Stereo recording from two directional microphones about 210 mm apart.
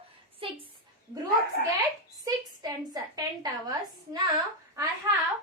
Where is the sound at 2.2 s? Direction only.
15° right (ahead or behind).